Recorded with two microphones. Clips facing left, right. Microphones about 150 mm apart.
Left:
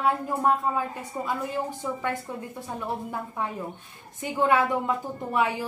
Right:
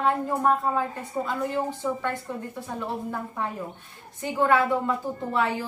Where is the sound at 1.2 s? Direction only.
5° left (ahead or behind).